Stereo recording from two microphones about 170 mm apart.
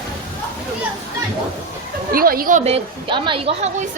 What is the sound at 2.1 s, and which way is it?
A woman's voice, 60° right (ahead or behind).